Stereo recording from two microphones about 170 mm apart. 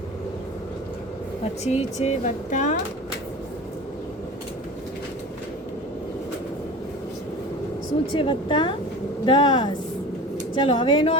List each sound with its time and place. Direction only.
1.6 s speech: 40° left (ahead or behind)
8.1 s speech: 30° left (ahead or behind)